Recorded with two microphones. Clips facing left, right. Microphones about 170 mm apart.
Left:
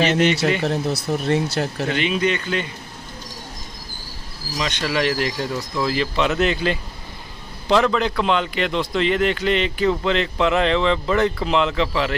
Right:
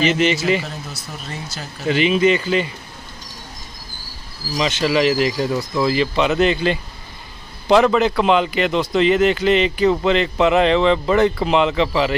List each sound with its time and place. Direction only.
0.1 s a man's voice: 5° right (ahead or behind)
0.6 s speech: 70° left (ahead or behind)
1.9 s a man's voice: 5° right (ahead or behind)
4.6 s a man's voice: 5° right (ahead or behind)